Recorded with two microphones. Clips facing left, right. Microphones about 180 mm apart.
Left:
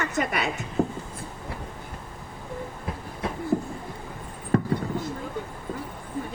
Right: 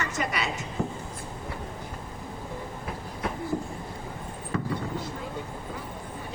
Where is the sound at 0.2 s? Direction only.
50° left (ahead or behind).